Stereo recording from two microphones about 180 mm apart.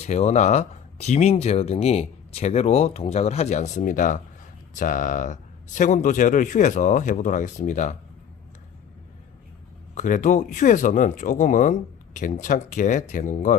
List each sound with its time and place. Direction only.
0.0 s speech: 35° left (ahead or behind)
9.9 s speech: 45° left (ahead or behind)